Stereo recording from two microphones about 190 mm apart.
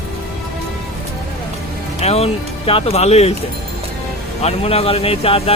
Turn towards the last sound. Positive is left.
turn(degrees=30)  # may be behind; listen again after turning